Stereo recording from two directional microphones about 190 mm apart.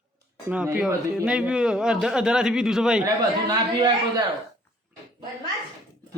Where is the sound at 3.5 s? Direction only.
20° right (ahead or behind).